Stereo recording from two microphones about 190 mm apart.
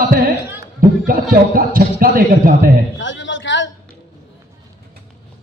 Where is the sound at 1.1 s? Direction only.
50° right (ahead or behind).